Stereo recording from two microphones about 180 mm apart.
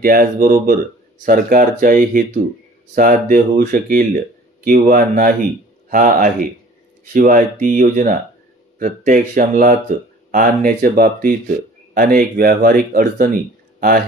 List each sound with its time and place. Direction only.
0.0 s speech: 55° right (ahead or behind)